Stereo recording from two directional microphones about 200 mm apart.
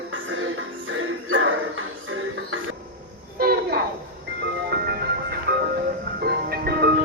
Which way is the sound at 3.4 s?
50° right (ahead or behind).